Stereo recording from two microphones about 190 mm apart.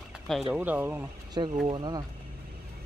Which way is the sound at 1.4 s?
20° right (ahead or behind).